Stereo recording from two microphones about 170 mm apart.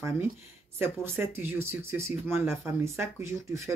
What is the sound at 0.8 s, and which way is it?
Speech, 15° right (ahead or behind).